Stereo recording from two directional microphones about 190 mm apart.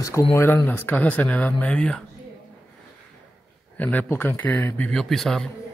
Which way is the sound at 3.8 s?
10° left (ahead or behind).